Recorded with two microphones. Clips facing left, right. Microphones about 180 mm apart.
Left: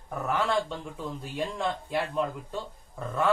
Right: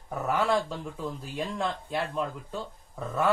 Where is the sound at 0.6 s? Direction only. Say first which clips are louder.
Right 1 dB; centre (ahead or behind).